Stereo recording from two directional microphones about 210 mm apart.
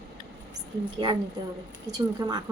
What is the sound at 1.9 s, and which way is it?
Speech, 20° right (ahead or behind).